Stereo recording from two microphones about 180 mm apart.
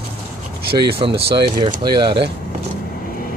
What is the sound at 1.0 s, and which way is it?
Speech, 30° right (ahead or behind).